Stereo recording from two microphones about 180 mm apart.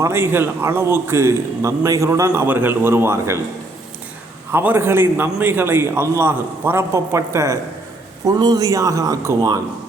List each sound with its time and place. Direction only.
0.0 s a man's voice: 15° right (ahead or behind)
4.5 s a man's voice: 10° right (ahead or behind)